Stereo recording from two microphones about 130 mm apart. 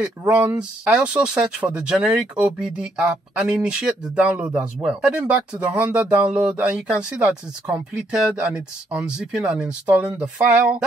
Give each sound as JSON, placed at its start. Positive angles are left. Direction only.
{"t": 0.3, "sound": "speech", "side_deg": -10}